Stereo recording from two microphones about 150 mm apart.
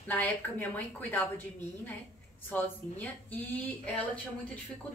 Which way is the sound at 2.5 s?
10° left (ahead or behind).